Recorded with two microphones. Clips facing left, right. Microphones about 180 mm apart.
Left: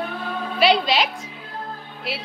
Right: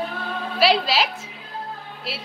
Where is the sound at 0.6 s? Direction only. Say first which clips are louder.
Left 1 dB; 5° right (ahead or behind).